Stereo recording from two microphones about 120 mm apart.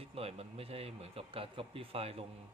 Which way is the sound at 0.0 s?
55° right (ahead or behind).